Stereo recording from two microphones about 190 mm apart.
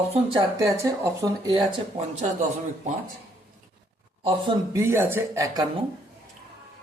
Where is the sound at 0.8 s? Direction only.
20° right (ahead or behind).